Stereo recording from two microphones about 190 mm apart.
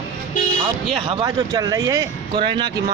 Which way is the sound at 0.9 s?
30° right (ahead or behind).